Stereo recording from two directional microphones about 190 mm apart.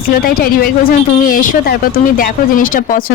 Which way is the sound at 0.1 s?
50° left (ahead or behind).